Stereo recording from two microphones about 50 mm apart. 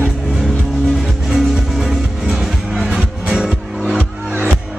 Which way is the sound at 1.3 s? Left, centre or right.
Centre.